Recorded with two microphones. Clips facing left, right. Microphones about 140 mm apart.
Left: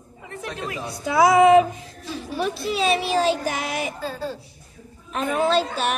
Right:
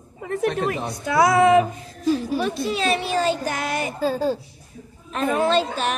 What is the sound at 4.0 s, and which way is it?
Speech, 40° right (ahead or behind).